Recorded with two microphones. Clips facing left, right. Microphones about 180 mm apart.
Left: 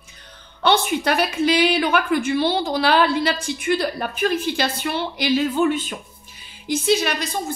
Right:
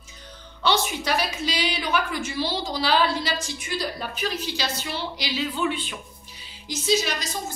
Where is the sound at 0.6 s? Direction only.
55° left (ahead or behind).